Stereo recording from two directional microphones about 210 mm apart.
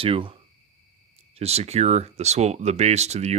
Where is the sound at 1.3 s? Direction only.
30° right (ahead or behind).